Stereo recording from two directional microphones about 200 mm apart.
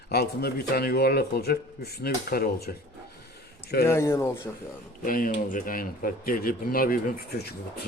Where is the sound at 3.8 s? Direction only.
15° left (ahead or behind).